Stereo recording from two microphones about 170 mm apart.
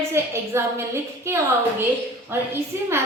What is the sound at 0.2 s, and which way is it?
Speech, 15° right (ahead or behind).